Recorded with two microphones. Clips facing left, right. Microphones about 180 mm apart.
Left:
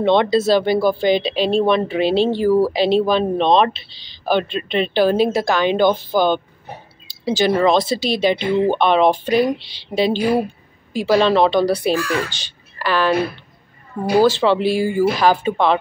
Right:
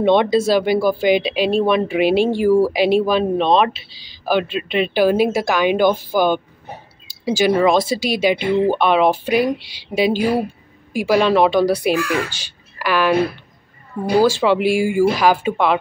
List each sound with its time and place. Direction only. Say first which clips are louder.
0.0 s speech: right 1 dB; 15° right (ahead or behind)
12.3 s a sound: even; 10° right (ahead or behind)
14.2 s speech: even; 10° right (ahead or behind)